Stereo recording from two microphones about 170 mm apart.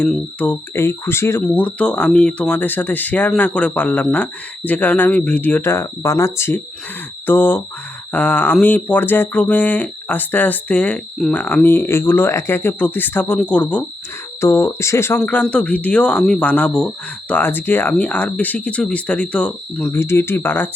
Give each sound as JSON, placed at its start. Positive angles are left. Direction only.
{"t": 0.1, "sound": "speech", "side_deg": 10}